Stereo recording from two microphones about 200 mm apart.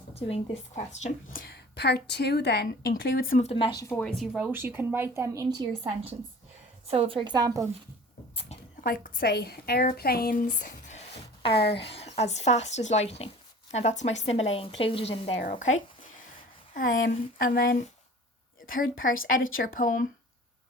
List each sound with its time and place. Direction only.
0.1 s a sound: 30° left (ahead or behind)
1.0 s a woman's voice: 45° left (ahead or behind)
3.4 s speech: 25° left (ahead or behind)
4.2 s a woman's voice: 5° right (ahead or behind)
8.8 s a woman's voice: 45° left (ahead or behind)
16.7 s a woman's voice: 45° left (ahead or behind)